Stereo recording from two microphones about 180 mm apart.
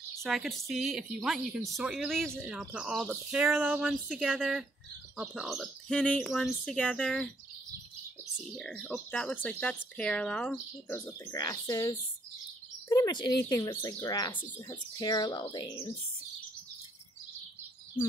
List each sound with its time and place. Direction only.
0.2 s speech: centre (ahead or behind)
8.8 s speech: 5° left (ahead or behind); by 15.9 s 25° left (ahead or behind)